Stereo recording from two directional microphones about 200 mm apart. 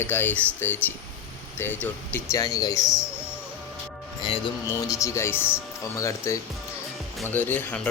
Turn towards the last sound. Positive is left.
turn(degrees=10)  # may be behind; listen again after turning